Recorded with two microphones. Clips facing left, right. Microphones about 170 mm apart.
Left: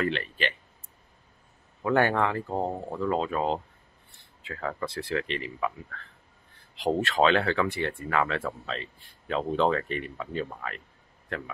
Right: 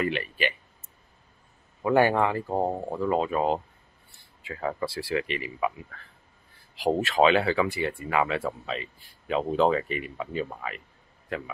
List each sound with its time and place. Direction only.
0.0 s speech: 10° right (ahead or behind)
1.8 s a man's voice: 10° right (ahead or behind)